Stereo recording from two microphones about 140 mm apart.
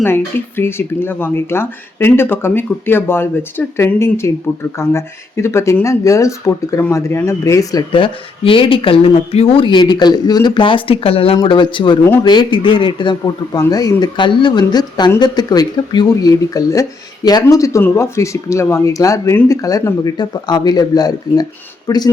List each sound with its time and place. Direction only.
0.0 s speech: 15° left (ahead or behind)
7.9 s speech: 40° left (ahead or behind)